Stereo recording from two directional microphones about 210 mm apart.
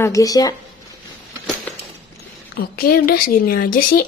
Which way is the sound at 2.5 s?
45° left (ahead or behind).